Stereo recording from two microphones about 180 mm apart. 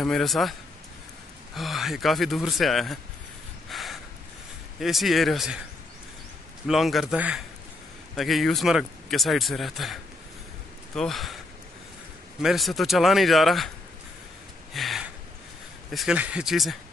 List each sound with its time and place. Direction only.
0.0 s speech: centre (ahead or behind)
3.6 s a sound: centre (ahead or behind)
4.7 s speech: centre (ahead or behind)
6.7 s speech: centre (ahead or behind)
11.0 s speech: centre (ahead or behind)
12.4 s speech: centre (ahead or behind)
14.7 s a sound: centre (ahead or behind)
15.9 s speech: centre (ahead or behind)